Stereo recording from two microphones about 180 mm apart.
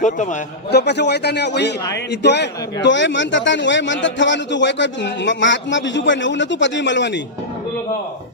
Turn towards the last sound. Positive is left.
turn(degrees=80)